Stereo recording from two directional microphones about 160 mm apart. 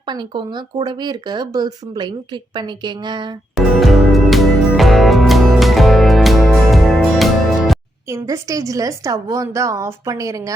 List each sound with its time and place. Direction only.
0.0 s speech: 25° right (ahead or behind)
3.5 s music: centre (ahead or behind)
8.0 s speech: 20° right (ahead or behind)